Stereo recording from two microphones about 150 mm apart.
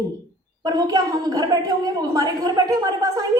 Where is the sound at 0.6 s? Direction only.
25° right (ahead or behind).